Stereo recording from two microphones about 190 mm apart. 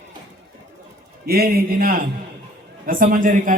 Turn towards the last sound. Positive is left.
turn(degrees=-45)  # may be behind; listen again after turning